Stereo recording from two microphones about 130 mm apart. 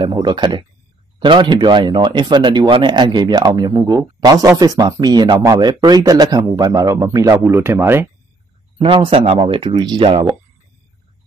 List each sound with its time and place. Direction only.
0.1 s speech: 35° right (ahead or behind); by 8.1 s 20° right (ahead or behind)
8.7 s a man's voice: 45° right (ahead or behind)